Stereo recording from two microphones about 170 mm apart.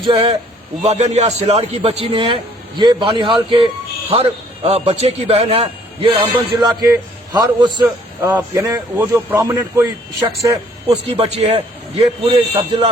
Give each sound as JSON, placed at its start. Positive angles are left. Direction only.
{"t": 0.0, "sound": "a man's voice", "side_deg": -30}
{"t": 0.9, "sound": "a man's voice", "side_deg": -40}
{"t": 8.2, "sound": "a man's voice", "side_deg": -10}
{"t": 11.0, "sound": "a man's voice", "side_deg": -35}